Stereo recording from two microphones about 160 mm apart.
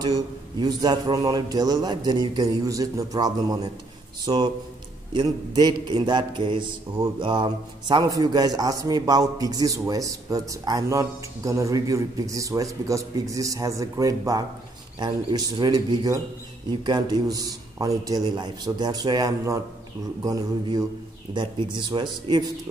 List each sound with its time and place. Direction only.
0.0 s mantra: 25° right (ahead or behind)
4.3 s speech: 30° right (ahead or behind)
5.1 s mantra: 25° right (ahead or behind)